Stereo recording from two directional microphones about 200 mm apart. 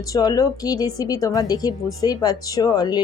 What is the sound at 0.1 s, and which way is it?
A woman's voice, 20° left (ahead or behind).